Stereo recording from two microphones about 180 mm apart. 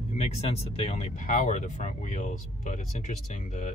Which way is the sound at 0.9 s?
40° left (ahead or behind).